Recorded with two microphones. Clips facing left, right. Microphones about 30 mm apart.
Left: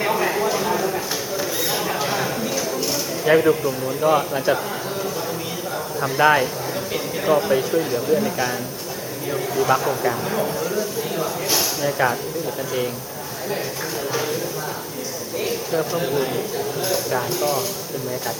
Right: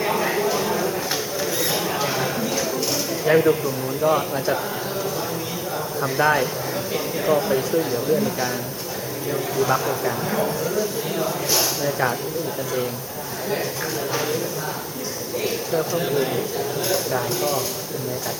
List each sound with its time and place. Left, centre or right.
0.2 s clip-clop: centre
3.2 s a man's voice: centre
6.0 s a man's voice: centre
6.9 s a sound: centre
7.7 s a man's voice: centre
14.1 s a man's voice: centre
15.4 s a man's voice: centre